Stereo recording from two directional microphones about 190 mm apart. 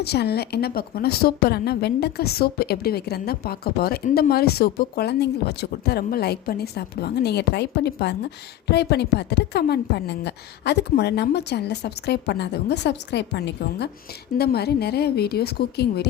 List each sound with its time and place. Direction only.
0.0 s a woman's voice: 60° left (ahead or behind)